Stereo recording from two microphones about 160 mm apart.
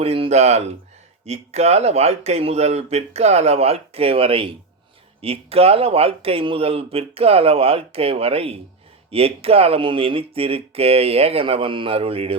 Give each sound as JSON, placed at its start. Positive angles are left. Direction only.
{"t": 0.0, "sound": "speech", "side_deg": -35}